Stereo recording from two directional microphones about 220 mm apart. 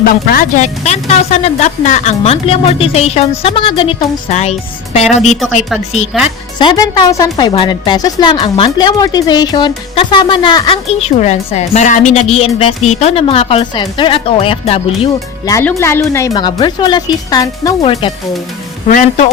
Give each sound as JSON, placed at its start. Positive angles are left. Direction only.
{"t": 0.0, "sound": "a woman's voice", "side_deg": 40}
{"t": 15.5, "sound": "speech", "side_deg": 10}
{"t": 18.9, "sound": "a woman's voice", "side_deg": 35}